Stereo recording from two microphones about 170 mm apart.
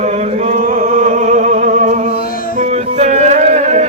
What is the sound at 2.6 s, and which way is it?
Music, 45° right (ahead or behind).